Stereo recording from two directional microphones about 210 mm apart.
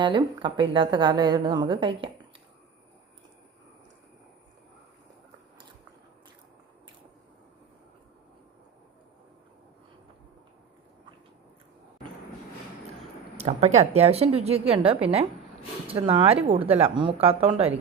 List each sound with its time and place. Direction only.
0.0 s a woman's voice: 20° right (ahead or behind)
13.3 s a sound: 30° right (ahead or behind)
13.7 s a woman's voice: 30° right (ahead or behind)